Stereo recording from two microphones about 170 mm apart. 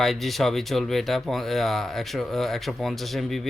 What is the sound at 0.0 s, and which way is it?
Speech, centre (ahead or behind).